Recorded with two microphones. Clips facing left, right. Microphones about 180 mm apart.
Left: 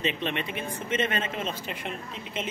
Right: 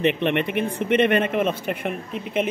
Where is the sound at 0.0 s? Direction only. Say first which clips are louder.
Right 9 dB; 60° right (ahead or behind).